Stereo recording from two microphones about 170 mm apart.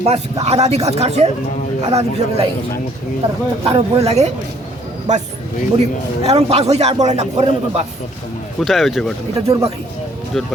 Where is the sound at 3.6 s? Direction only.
35° right (ahead or behind).